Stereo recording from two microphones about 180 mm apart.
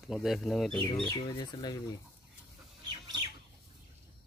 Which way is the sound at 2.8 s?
25° right (ahead or behind).